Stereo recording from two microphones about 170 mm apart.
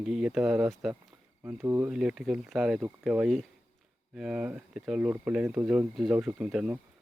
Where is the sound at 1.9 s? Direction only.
5° right (ahead or behind).